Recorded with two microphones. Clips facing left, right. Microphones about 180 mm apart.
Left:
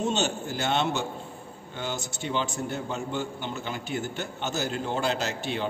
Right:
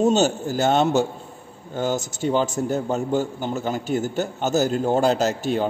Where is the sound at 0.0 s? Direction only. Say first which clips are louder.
Right 9 dB; 40° right (ahead or behind).